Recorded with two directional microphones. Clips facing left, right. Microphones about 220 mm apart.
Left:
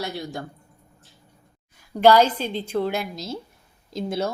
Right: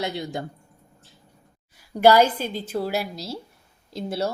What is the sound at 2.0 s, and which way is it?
A woman's voice, 10° right (ahead or behind).